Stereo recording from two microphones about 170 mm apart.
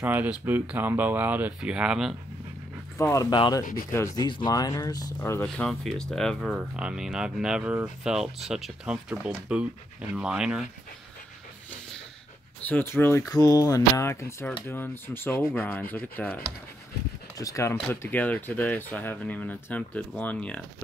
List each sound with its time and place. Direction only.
0.0 s speech: 10° right (ahead or behind)
3.0 s speech: 20° left (ahead or behind); by 10.7 s 5° right (ahead or behind)
12.6 s speech: 10° left (ahead or behind)
17.4 s speech: 20° left (ahead or behind)